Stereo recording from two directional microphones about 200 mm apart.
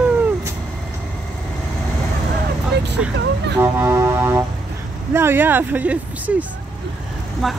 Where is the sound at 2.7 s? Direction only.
60° right (ahead or behind).